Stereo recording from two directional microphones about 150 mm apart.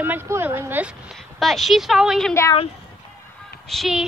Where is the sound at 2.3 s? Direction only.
20° left (ahead or behind).